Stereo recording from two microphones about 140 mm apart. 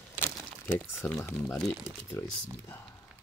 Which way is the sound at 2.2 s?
15° left (ahead or behind).